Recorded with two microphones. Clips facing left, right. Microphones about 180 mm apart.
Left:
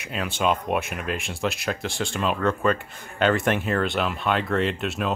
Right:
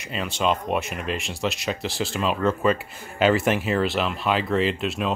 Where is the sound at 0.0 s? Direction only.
Centre (ahead or behind).